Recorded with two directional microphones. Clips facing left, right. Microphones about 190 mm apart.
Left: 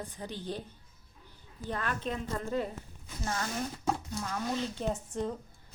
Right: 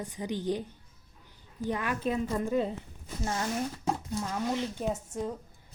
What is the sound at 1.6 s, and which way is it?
Speech, 15° right (ahead or behind).